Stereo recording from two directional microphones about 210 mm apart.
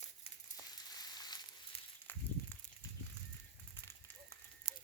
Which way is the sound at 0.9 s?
20° left (ahead or behind).